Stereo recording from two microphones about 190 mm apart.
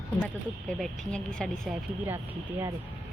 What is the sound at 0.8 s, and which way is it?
Speech, 5° left (ahead or behind).